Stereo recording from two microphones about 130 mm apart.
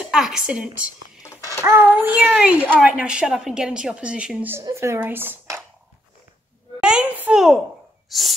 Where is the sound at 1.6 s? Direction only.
20° right (ahead or behind).